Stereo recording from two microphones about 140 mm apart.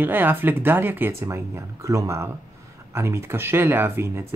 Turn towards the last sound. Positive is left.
turn(degrees=-20)  # may be behind; listen again after turning